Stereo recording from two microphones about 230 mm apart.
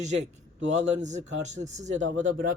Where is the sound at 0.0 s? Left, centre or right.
Right.